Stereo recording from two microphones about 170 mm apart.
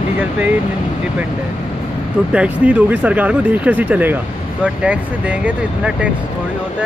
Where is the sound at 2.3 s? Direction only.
5° right (ahead or behind).